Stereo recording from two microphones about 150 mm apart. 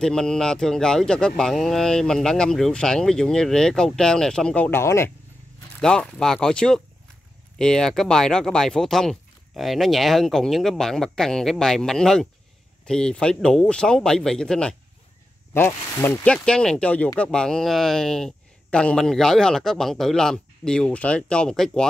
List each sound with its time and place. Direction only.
0.0 s speech: 5° left (ahead or behind)
5.8 s speech: 5° left (ahead or behind)
16.4 s speech: 5° left (ahead or behind)